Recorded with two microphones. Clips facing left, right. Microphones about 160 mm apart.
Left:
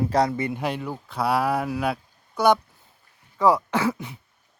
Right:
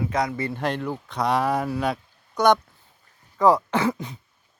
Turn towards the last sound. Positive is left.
turn(degrees=15)  # may be behind; listen again after turning